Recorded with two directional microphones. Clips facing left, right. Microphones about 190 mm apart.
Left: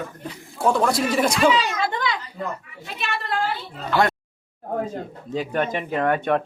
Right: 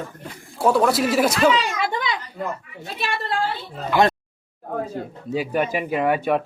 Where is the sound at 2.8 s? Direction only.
35° right (ahead or behind).